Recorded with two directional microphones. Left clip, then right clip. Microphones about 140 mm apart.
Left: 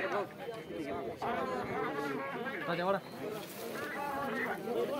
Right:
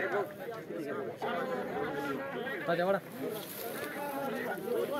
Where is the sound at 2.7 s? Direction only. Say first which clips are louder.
Right 3 dB; 5° right (ahead or behind).